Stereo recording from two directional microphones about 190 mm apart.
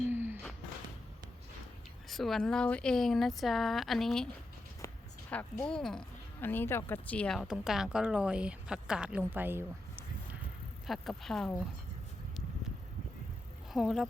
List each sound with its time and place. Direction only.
0.1 s a sound: 10° right (ahead or behind)
2.0 s speech: centre (ahead or behind)
4.8 s a sound: 15° left (ahead or behind)
5.3 s speech: 5° left (ahead or behind); by 10.0 s 10° right (ahead or behind)
10.8 s speech: centre (ahead or behind)
13.7 s speech: centre (ahead or behind)